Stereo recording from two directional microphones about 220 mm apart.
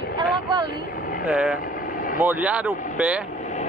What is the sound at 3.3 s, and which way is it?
Vehicle, 35° left (ahead or behind).